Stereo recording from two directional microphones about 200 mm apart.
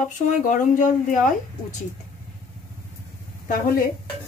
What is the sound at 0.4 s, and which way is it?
Speech, 40° left (ahead or behind).